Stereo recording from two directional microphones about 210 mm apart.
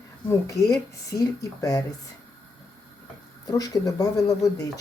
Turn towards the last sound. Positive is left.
turn(degrees=15)  # may be behind; listen again after turning